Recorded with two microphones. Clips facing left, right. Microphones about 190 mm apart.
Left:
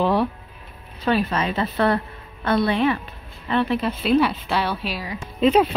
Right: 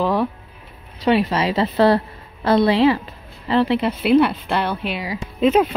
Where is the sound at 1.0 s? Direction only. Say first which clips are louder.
Right 4 dB; 25° right (ahead or behind).